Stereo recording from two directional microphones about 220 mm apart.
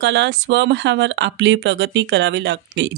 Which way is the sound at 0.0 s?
50° right (ahead or behind).